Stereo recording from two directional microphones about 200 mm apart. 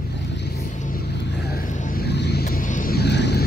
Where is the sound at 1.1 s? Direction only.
55° left (ahead or behind).